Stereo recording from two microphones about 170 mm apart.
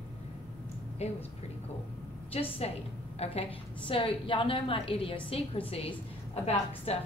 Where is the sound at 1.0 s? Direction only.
40° left (ahead or behind).